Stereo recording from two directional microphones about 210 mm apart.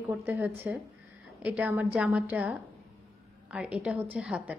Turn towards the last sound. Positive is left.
turn(degrees=-5)  # may be behind; listen again after turning